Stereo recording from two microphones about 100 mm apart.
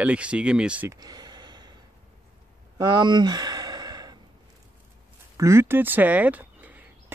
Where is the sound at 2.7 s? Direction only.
45° right (ahead or behind).